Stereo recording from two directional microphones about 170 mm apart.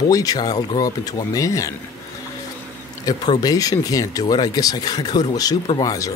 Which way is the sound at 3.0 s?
20° left (ahead or behind).